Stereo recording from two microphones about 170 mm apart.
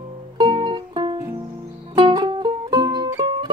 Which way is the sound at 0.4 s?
25° right (ahead or behind).